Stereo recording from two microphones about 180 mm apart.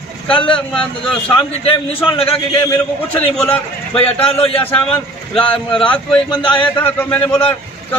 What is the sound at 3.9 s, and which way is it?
Speech, 30° left (ahead or behind).